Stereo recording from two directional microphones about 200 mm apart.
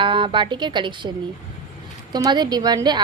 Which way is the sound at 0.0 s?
25° right (ahead or behind).